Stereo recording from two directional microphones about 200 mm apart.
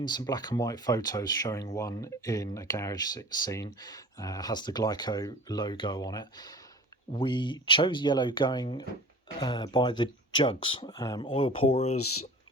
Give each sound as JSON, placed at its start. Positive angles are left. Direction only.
{"t": 0.0, "sound": "speech", "side_deg": 20}